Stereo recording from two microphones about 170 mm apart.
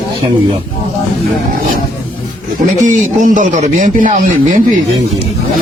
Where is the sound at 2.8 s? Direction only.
50° right (ahead or behind).